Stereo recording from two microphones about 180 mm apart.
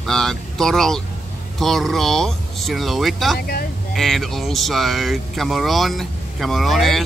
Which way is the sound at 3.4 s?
60° left (ahead or behind).